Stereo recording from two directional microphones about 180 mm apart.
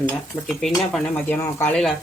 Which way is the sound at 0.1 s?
Centre (ahead or behind).